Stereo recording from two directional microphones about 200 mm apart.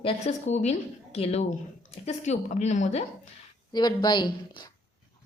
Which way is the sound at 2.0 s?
35° left (ahead or behind).